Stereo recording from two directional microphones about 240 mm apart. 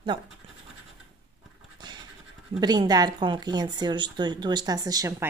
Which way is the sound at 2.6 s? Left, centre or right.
Centre.